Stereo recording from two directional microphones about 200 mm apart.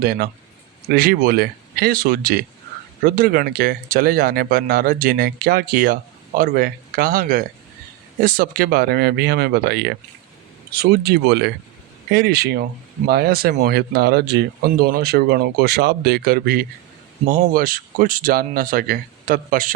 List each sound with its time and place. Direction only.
0.0 s speech: 50° right (ahead or behind)